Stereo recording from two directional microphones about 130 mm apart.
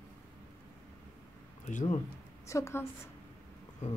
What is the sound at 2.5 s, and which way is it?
Speech, 20° left (ahead or behind).